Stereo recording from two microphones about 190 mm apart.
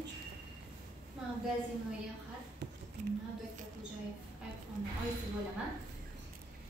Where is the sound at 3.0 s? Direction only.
40° right (ahead or behind).